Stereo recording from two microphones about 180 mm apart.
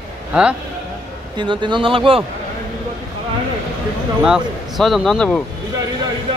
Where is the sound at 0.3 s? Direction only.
5° right (ahead or behind).